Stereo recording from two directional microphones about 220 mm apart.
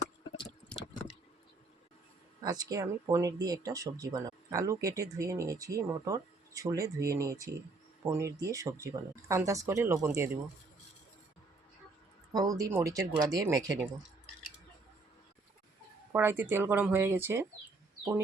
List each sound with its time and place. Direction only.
2.4 s speech: 15° right (ahead or behind)
12.3 s speech: 15° right (ahead or behind)
16.1 s speech: 10° right (ahead or behind)